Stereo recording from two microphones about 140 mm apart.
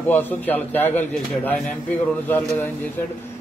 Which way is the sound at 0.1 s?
15° left (ahead or behind).